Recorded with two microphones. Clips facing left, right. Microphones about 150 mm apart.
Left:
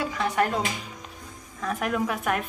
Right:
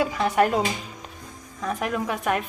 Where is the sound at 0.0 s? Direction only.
15° right (ahead or behind).